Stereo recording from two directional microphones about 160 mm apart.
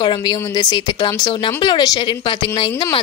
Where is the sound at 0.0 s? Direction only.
30° left (ahead or behind).